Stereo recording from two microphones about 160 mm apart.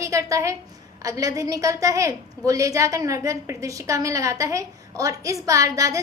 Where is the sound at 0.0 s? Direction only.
20° right (ahead or behind).